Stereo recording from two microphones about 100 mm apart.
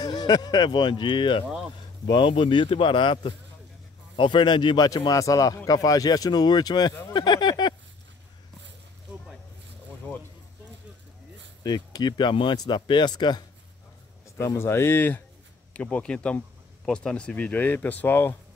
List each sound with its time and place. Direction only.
0.0 s speech: 40° left (ahead or behind)
11.6 s speech: 45° left (ahead or behind)
14.4 s speech: 25° left (ahead or behind)